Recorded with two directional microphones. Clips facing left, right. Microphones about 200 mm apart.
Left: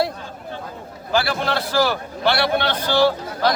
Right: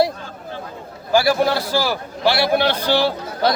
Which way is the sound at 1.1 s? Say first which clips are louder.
Right 5 dB; 10° right (ahead or behind).